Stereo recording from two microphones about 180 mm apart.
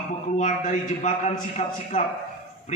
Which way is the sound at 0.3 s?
45° left (ahead or behind).